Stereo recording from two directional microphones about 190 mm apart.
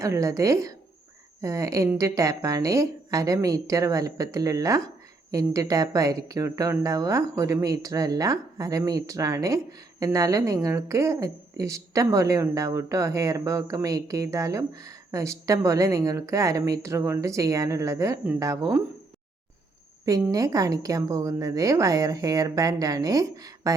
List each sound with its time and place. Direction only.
0.0 s speech: 15° right (ahead or behind)
20.1 s speech: 20° right (ahead or behind)